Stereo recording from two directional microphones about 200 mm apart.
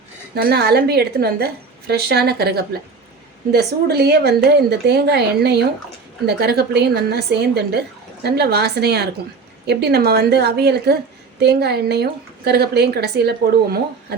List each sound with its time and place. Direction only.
0.3 s a woman's voice: 50° right (ahead or behind)